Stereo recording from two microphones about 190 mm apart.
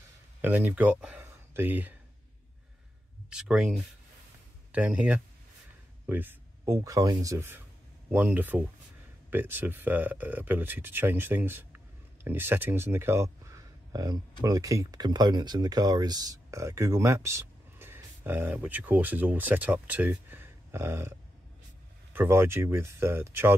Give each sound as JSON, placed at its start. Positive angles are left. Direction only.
{"t": 0.4, "sound": "speech", "side_deg": -10}
{"t": 3.3, "sound": "speech", "side_deg": -5}
{"t": 22.1, "sound": "speech", "side_deg": -10}